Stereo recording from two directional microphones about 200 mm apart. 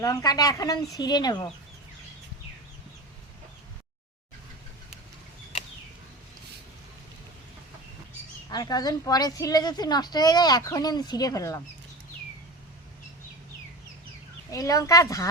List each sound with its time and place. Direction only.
0.0 s a woman's voice: 15° left (ahead or behind)
8.4 s a woman's voice: 20° left (ahead or behind)
14.5 s speech: 15° left (ahead or behind)